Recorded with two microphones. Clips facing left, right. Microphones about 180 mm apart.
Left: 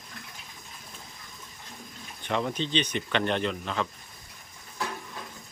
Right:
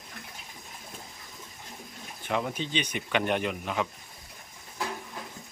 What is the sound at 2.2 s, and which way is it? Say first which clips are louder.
Speech: left 1 dB; 10° right (ahead or behind).